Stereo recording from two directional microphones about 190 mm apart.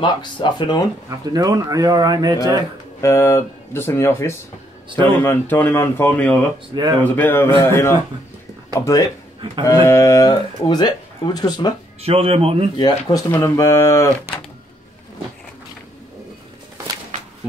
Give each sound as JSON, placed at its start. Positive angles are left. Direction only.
{"t": 0.0, "sound": "speech", "side_deg": 25}
{"t": 1.3, "sound": "speech", "side_deg": -20}
{"t": 3.0, "sound": "speech", "side_deg": 15}
{"t": 6.7, "sound": "speech", "side_deg": -20}
{"t": 7.0, "sound": "speech", "side_deg": 10}
{"t": 12.0, "sound": "speech", "side_deg": -30}
{"t": 12.7, "sound": "speech", "side_deg": 20}